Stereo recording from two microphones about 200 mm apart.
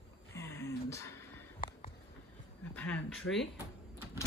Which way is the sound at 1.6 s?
45° left (ahead or behind).